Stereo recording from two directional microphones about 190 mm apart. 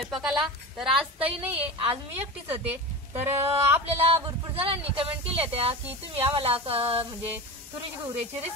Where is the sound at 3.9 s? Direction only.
30° right (ahead or behind).